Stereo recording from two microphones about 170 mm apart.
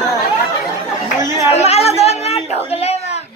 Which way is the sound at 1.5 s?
40° left (ahead or behind).